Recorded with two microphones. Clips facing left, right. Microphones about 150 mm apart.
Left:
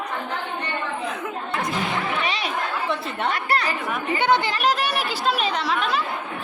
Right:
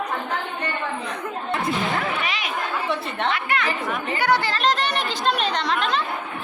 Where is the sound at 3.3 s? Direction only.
35° left (ahead or behind).